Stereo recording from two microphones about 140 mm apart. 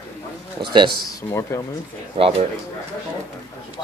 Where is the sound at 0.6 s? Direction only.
35° right (ahead or behind).